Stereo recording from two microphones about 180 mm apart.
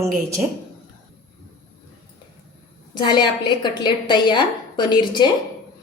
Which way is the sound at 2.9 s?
25° left (ahead or behind).